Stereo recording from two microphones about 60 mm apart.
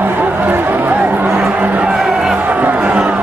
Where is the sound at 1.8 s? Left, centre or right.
Centre.